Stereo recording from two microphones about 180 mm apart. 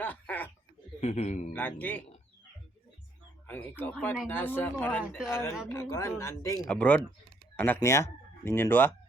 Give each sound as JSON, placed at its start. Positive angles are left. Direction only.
{"t": 0.0, "sound": "speech", "side_deg": 10}
{"t": 1.0, "sound": "a man's voice", "side_deg": 40}
{"t": 1.5, "sound": "speech", "side_deg": 10}
{"t": 3.4, "sound": "speech", "side_deg": 10}